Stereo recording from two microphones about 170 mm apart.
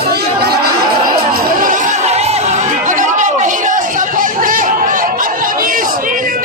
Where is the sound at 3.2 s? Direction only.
45° right (ahead or behind).